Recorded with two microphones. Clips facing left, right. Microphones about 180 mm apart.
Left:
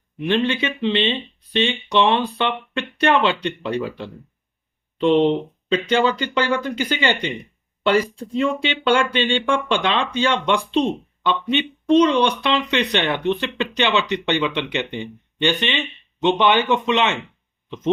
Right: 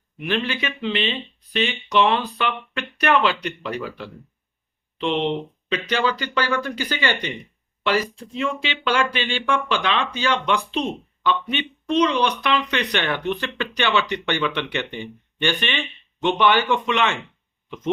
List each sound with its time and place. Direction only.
0.2 s speech: 25° left (ahead or behind)
4.9 s speech: 40° left (ahead or behind)
5.7 s speech: 25° left (ahead or behind)